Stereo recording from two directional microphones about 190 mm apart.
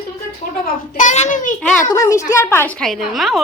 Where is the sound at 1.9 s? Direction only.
15° left (ahead or behind); by 3.4 s centre (ahead or behind).